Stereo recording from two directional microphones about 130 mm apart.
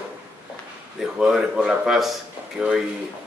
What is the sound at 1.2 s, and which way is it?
Speech, 5° right (ahead or behind).